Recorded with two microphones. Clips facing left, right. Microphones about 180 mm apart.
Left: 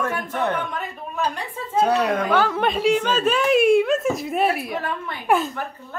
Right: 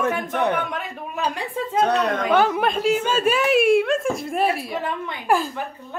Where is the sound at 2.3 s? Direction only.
20° right (ahead or behind).